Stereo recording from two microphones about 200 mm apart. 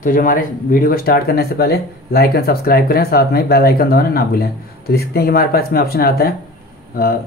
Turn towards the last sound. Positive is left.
turn(degrees=50)  # may be behind; listen again after turning